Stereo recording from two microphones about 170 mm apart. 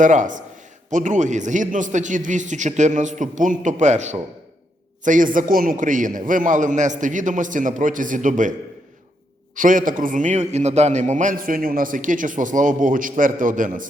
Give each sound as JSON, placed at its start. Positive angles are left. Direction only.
{"t": 0.0, "sound": "a man's voice", "side_deg": -50}
{"t": 9.6, "sound": "a man's voice", "side_deg": -50}